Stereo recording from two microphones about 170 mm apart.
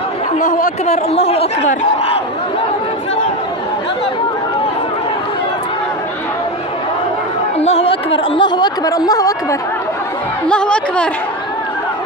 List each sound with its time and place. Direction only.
0.4 s speech: 50° left (ahead or behind)
7.6 s speech: 35° left (ahead or behind); by 9.6 s 20° left (ahead or behind)
10.5 s a woman's voice: 5° left (ahead or behind)